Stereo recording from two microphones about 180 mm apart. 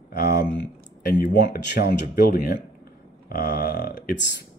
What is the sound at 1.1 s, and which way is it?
Speech, 55° left (ahead or behind).